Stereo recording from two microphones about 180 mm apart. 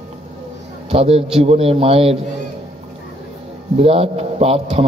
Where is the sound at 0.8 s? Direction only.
35° right (ahead or behind).